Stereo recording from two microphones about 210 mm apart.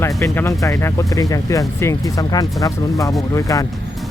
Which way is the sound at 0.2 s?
15° left (ahead or behind).